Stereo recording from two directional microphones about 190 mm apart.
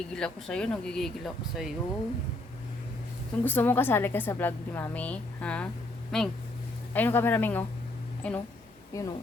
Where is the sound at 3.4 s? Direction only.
10° left (ahead or behind).